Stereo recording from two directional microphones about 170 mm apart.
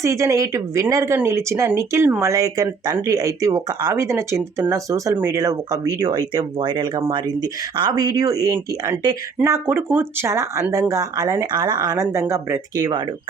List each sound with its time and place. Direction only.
0.0 s speech: 20° right (ahead or behind)